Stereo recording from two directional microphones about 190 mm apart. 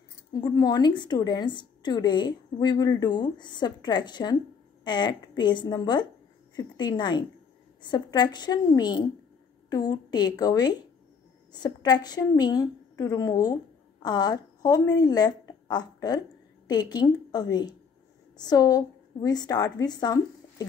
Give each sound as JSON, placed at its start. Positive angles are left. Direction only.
{"t": 0.3, "sound": "a woman's voice", "side_deg": 20}